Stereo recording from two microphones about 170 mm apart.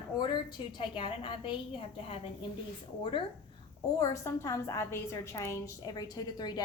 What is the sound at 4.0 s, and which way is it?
A woman's voice, 20° left (ahead or behind).